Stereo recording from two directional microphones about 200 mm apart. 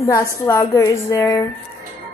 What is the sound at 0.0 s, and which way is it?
A woman's voice, 15° left (ahead or behind).